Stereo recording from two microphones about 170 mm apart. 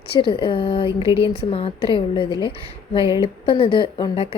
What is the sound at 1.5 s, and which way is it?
A woman's voice, 35° left (ahead or behind).